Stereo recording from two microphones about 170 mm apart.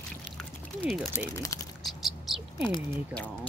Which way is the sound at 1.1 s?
20° left (ahead or behind).